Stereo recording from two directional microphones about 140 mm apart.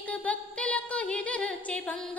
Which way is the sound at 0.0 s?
10° left (ahead or behind).